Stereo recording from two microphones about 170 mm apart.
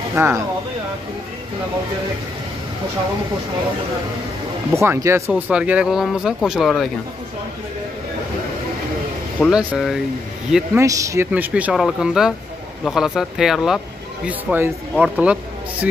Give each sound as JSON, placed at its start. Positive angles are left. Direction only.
{"t": 0.1, "sound": "speech", "side_deg": -15}
{"t": 4.7, "sound": "speech", "side_deg": -15}
{"t": 9.4, "sound": "speech", "side_deg": -5}
{"t": 10.5, "sound": "speech", "side_deg": -15}